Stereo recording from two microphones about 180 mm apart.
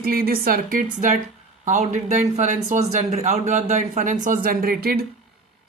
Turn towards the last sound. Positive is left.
turn(degrees=-60)  # may be behind; listen again after turning